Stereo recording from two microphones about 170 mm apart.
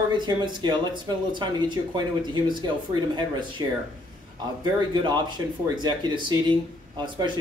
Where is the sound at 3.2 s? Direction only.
25° right (ahead or behind).